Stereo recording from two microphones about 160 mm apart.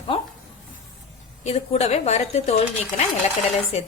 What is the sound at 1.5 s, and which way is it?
Speech, 40° left (ahead or behind).